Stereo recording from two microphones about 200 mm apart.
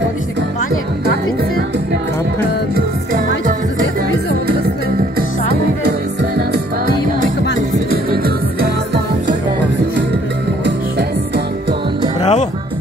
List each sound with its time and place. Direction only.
2.7 s music: 45° right (ahead or behind)
5.1 s music: 50° right (ahead or behind)
7.9 s music: 50° right (ahead or behind)
10.6 s music: 55° right (ahead or behind)
12.2 s music: 35° left (ahead or behind)